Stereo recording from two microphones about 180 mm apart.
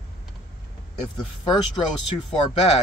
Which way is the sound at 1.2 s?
25° left (ahead or behind).